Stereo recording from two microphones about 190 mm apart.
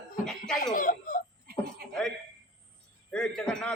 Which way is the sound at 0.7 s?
45° left (ahead or behind).